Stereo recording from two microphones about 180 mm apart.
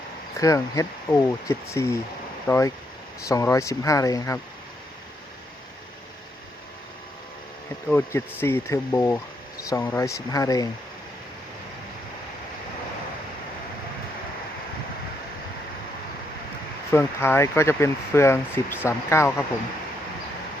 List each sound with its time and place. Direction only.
0.3 s speech: 20° left (ahead or behind)
7.9 s speech: 10° left (ahead or behind)
16.9 s speech: 15° left (ahead or behind)